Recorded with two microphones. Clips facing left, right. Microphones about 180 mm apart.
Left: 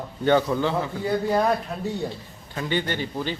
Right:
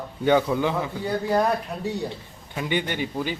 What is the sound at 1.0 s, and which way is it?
Speech, centre (ahead or behind).